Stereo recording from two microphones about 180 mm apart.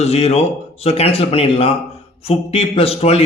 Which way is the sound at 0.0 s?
35° left (ahead or behind).